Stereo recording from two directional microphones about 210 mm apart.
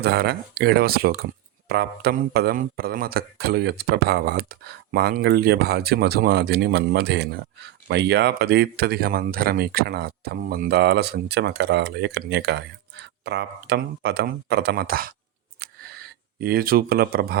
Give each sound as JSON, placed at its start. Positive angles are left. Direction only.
{"t": 0.0, "sound": "speech", "side_deg": -50}
{"t": 15.6, "sound": "scissors", "side_deg": -45}
{"t": 16.4, "sound": "speech", "side_deg": -45}